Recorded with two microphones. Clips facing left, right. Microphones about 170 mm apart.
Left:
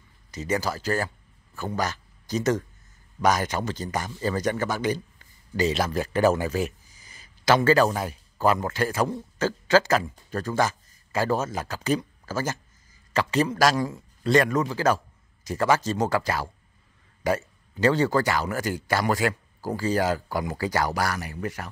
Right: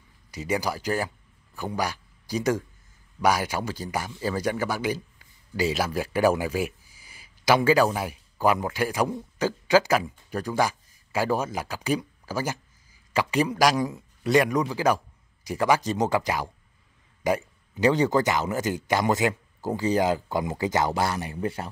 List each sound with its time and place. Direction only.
0.3 s a man's voice: 10° right (ahead or behind); by 21.6 s 25° right (ahead or behind)